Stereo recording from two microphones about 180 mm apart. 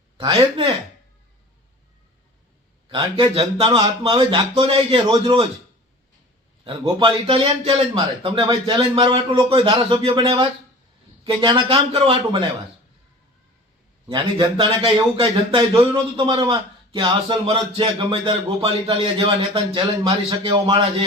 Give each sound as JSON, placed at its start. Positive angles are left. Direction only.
{"t": 0.2, "sound": "speech", "side_deg": -25}
{"t": 2.9, "sound": "speech", "side_deg": -30}
{"t": 6.7, "sound": "speech", "side_deg": -30}
{"t": 14.1, "sound": "speech", "side_deg": -25}